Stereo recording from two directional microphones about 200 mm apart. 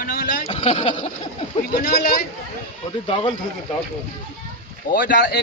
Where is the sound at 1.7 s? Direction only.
40° left (ahead or behind).